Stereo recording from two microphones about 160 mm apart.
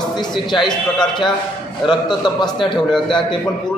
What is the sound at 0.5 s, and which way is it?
A man's voice, 30° left (ahead or behind).